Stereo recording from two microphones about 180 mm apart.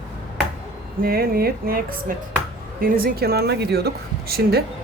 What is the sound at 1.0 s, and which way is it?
Speech, 55° right (ahead or behind).